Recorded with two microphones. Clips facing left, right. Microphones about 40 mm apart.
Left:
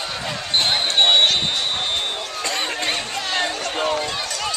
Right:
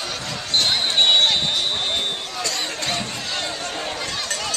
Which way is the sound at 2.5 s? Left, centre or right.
Left.